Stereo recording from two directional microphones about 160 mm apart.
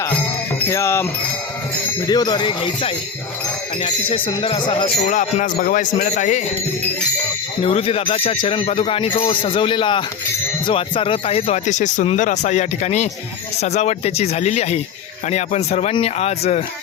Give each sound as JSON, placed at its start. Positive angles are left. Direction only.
{"t": 0.7, "sound": "wind chime", "side_deg": 15}
{"t": 2.0, "sound": "speech", "side_deg": 25}
{"t": 5.0, "sound": "speech", "side_deg": 50}
{"t": 7.6, "sound": "speech", "side_deg": 35}